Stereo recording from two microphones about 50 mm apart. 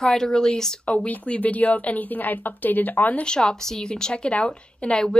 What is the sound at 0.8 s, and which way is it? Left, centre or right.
Speech, left.